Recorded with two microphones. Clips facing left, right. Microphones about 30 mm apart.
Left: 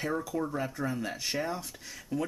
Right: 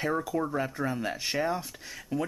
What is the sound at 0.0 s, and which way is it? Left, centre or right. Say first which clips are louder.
Speech: right 3 dB; centre.